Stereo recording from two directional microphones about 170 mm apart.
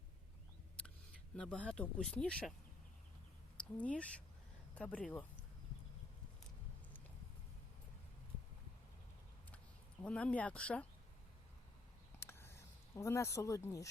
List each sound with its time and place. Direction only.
1.4 s speech: 5° left (ahead or behind)
3.6 s speech: 5° left (ahead or behind)
10.0 s speech: 5° left (ahead or behind)
12.2 s a sound: 15° left (ahead or behind)